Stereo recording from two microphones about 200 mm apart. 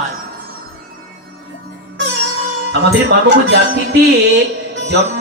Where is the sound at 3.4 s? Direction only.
60° right (ahead or behind).